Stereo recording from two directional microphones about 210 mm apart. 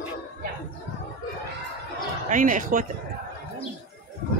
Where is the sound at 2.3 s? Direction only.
35° right (ahead or behind).